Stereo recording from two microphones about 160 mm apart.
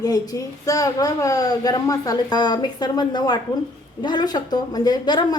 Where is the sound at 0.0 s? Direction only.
20° left (ahead or behind).